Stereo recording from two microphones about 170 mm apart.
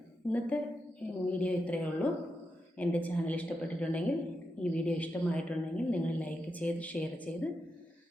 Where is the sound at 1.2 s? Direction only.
10° left (ahead or behind).